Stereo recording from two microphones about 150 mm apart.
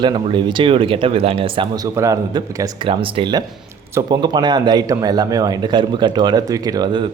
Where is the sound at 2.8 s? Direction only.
35° right (ahead or behind).